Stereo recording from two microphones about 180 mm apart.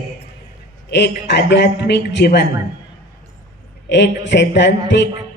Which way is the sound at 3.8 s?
75° left (ahead or behind).